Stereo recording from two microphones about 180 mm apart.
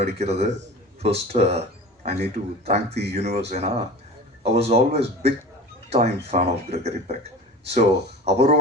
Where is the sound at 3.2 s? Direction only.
35° right (ahead or behind).